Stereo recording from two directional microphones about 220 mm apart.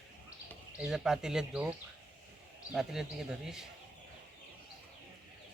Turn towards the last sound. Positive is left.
turn(degrees=0)  # may be behind; listen again after turning